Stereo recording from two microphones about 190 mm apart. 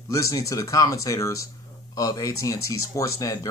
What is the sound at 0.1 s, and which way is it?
Speech, 15° left (ahead or behind).